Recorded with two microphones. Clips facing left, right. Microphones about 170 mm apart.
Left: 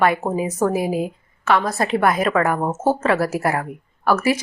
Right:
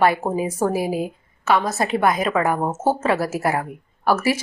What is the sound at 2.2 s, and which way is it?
Speech, 20° right (ahead or behind).